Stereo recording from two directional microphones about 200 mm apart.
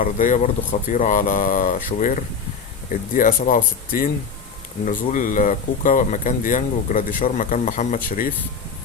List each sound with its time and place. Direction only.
0.0 s speech: 40° left (ahead or behind)